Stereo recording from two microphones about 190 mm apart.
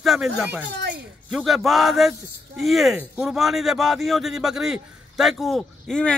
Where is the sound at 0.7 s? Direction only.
60° right (ahead or behind).